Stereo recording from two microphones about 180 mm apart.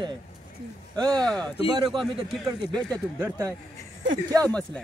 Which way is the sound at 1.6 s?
20° right (ahead or behind).